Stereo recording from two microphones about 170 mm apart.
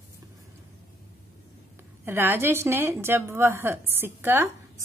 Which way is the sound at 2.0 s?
15° right (ahead or behind).